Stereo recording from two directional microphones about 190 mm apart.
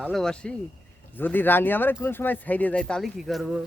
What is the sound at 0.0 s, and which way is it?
Speech, centre (ahead or behind).